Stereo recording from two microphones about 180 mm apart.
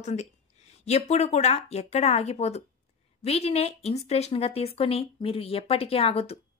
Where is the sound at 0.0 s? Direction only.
40° left (ahead or behind).